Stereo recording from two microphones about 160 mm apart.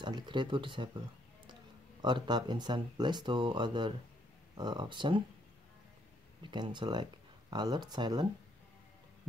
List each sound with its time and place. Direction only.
0.0 s speech: 30° right (ahead or behind)
6.4 s speech: 30° right (ahead or behind)